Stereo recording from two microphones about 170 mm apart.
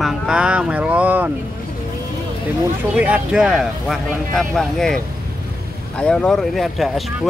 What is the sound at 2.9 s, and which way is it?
Speech, 5° right (ahead or behind).